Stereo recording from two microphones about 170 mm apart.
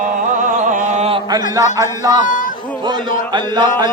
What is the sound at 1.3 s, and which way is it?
Speech, 20° right (ahead or behind).